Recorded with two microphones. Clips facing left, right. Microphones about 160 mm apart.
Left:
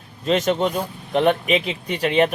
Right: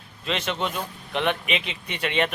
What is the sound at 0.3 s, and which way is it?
Speech, 40° left (ahead or behind).